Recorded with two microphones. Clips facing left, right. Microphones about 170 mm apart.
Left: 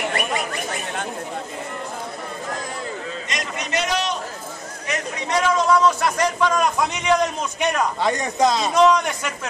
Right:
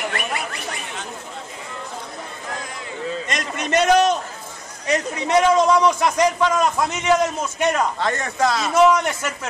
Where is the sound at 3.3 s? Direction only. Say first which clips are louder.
Right 4 dB; 50° right (ahead or behind).